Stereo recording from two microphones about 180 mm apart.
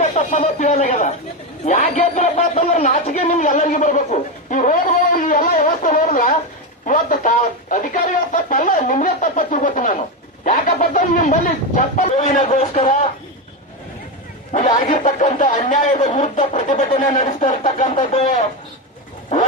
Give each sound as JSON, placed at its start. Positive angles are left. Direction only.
{"t": 0.0, "sound": "a man's voice", "side_deg": 45}
{"t": 14.8, "sound": "a man's voice", "side_deg": 45}